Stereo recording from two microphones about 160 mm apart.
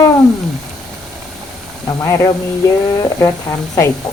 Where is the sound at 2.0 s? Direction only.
20° left (ahead or behind).